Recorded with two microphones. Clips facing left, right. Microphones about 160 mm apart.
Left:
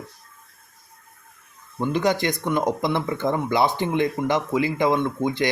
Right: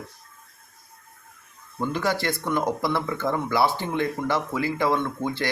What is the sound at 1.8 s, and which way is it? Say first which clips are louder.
Speech: left 4 dB; 20° left (ahead or behind).